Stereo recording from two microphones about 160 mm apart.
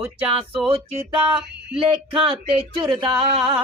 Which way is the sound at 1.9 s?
35° right (ahead or behind).